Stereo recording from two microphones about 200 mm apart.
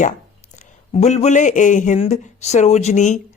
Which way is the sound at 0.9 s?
35° left (ahead or behind).